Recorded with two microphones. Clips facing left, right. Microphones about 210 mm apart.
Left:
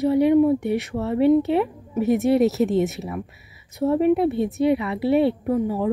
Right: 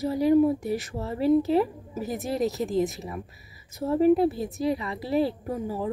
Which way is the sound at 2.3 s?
75° left (ahead or behind).